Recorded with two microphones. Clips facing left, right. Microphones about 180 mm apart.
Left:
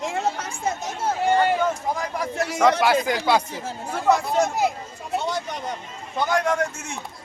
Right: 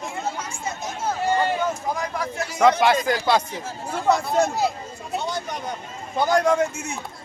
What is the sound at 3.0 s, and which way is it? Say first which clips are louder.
Speech: even; 10° left (ahead or behind).